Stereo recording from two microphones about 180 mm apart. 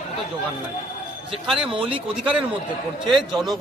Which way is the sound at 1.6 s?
30° right (ahead or behind).